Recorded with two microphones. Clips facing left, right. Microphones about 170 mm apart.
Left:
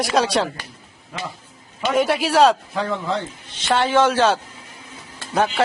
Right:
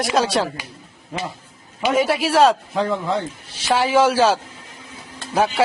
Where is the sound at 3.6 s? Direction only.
5° right (ahead or behind).